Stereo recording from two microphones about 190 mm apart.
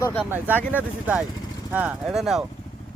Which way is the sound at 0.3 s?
10° right (ahead or behind).